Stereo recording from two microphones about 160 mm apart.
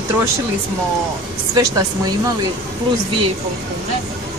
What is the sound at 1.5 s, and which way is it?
Speech, 20° right (ahead or behind).